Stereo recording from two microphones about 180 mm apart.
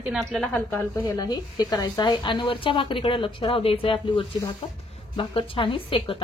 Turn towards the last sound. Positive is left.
turn(degrees=30)  # may be behind; listen again after turning